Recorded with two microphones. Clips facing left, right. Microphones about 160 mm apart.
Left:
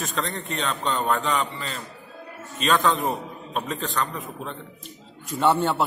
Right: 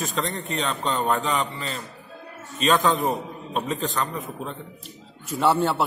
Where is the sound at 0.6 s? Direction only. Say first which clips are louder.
Even; 5° right (ahead or behind).